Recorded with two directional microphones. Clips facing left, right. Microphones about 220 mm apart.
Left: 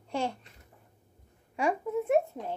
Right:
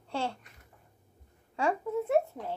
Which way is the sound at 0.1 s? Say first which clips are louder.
Left 2 dB; 15° left (ahead or behind).